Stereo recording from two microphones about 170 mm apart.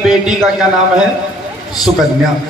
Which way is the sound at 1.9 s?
35° right (ahead or behind).